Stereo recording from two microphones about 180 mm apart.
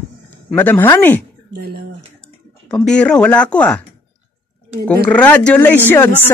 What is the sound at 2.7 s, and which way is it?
Speech, 5° left (ahead or behind).